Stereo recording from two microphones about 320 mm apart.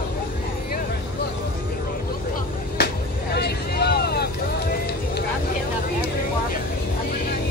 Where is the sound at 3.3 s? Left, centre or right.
Left.